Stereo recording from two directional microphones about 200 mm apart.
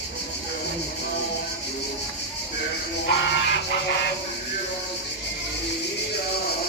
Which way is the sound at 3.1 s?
60° left (ahead or behind).